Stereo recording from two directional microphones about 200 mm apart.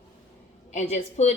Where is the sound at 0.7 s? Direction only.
35° left (ahead or behind).